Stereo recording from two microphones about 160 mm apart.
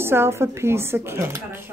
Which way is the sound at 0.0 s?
15° right (ahead or behind).